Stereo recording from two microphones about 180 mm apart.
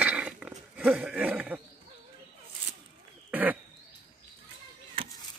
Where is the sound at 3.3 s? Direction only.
10° right (ahead or behind).